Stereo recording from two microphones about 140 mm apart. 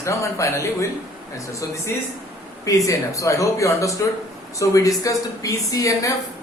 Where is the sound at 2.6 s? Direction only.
25° left (ahead or behind).